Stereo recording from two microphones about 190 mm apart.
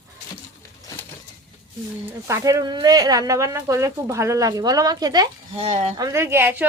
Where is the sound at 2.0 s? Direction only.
15° right (ahead or behind).